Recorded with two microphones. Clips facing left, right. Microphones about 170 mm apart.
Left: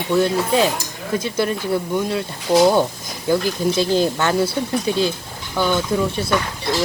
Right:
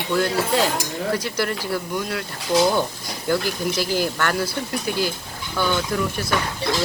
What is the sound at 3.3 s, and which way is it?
Speech, 20° left (ahead or behind).